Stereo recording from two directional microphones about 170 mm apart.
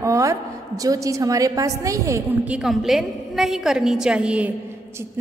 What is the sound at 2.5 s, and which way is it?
A woman's voice, 5° right (ahead or behind).